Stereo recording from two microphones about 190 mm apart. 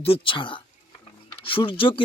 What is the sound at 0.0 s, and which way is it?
Speech, 30° left (ahead or behind).